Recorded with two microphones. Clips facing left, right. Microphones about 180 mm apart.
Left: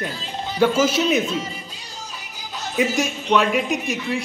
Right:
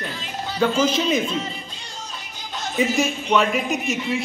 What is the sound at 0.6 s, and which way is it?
Speech, 5° left (ahead or behind).